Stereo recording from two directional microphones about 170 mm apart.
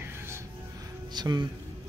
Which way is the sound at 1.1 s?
25° right (ahead or behind).